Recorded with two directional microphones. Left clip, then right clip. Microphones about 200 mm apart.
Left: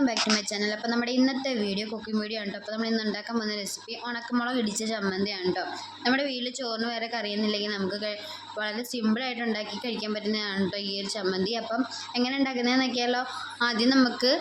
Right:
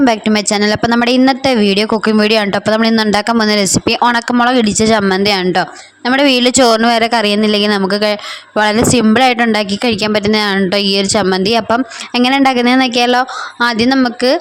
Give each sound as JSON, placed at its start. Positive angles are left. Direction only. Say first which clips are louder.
{"t": 0.0, "sound": "speech", "louder": "right 13 dB", "side_deg": -50}